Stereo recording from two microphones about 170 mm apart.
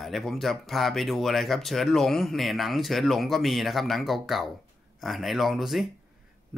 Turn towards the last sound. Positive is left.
turn(degrees=0)  # may be behind; listen again after turning